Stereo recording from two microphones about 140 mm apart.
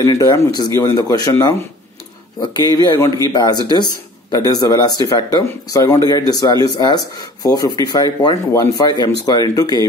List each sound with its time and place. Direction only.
0.0 s speech: 25° left (ahead or behind)
2.7 s speech: 30° left (ahead or behind)